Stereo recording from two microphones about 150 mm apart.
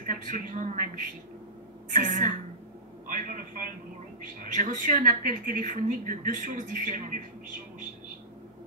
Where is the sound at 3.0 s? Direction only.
65° right (ahead or behind).